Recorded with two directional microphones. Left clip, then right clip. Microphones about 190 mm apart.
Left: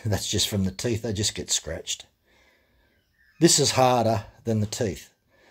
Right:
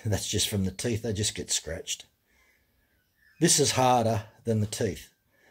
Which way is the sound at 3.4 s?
20° left (ahead or behind).